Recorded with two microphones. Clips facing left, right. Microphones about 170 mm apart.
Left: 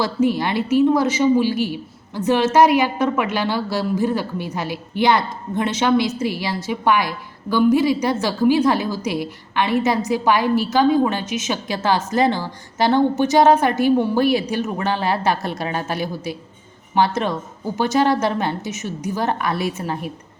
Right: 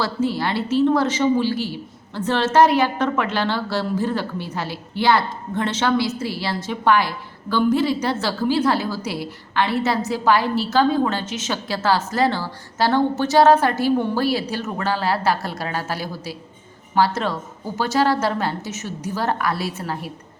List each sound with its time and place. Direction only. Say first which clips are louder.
0.0 s a woman's voice: left 3 dB; 15° left (ahead or behind)